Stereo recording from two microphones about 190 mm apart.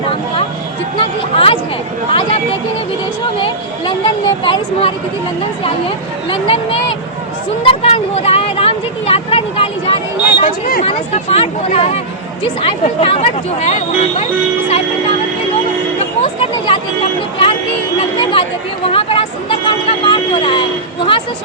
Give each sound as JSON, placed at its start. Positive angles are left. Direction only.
{"t": 0.9, "sound": "speech", "side_deg": 30}
{"t": 3.4, "sound": "speech", "side_deg": 25}
{"t": 6.3, "sound": "speech", "side_deg": 30}
{"t": 16.2, "sound": "chatter", "side_deg": 30}
{"t": 18.2, "sound": "speech", "side_deg": 25}
{"t": 18.9, "sound": "a sound", "side_deg": 30}